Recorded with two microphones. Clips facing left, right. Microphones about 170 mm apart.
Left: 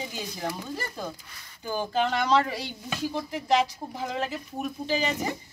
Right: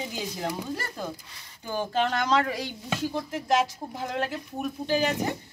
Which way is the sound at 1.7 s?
5° left (ahead or behind).